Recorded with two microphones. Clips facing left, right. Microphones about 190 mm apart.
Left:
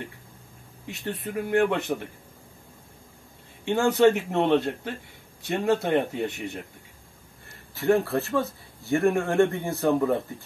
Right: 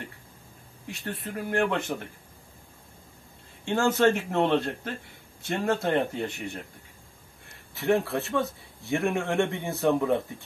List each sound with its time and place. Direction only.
0.8 s speech: 20° left (ahead or behind)
3.6 s speech: 15° left (ahead or behind)
7.7 s speech: centre (ahead or behind)